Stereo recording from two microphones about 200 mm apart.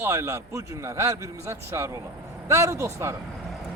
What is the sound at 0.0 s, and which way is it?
A man's voice, 15° right (ahead or behind).